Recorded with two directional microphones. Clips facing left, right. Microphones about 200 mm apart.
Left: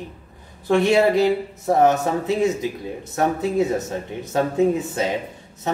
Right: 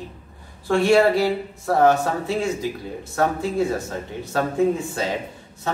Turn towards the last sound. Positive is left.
turn(degrees=20)  # may be behind; listen again after turning